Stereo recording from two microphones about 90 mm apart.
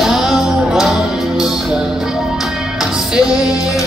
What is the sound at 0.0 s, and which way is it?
Music, 5° right (ahead or behind).